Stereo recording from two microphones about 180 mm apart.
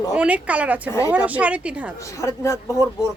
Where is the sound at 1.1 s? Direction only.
10° right (ahead or behind).